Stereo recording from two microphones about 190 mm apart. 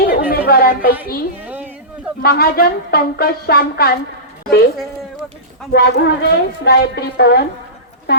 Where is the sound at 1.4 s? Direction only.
10° right (ahead or behind).